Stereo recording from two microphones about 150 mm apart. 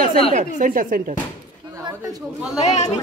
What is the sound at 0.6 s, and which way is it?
Speech, 65° right (ahead or behind).